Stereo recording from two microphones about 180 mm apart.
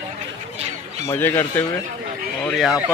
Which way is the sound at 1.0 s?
10° left (ahead or behind).